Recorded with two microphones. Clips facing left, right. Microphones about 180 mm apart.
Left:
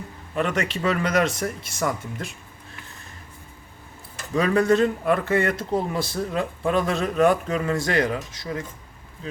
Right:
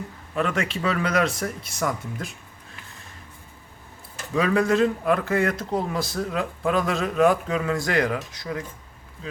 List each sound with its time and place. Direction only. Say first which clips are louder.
0.3 s speech: left 1 dB; centre (ahead or behind)
4.4 s speech: left 1 dB; centre (ahead or behind)